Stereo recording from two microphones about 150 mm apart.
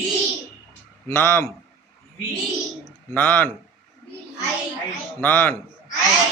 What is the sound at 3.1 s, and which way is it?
Speech, 15° left (ahead or behind).